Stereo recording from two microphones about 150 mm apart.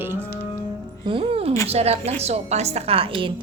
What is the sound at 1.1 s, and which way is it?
A woman's voice, 35° right (ahead or behind).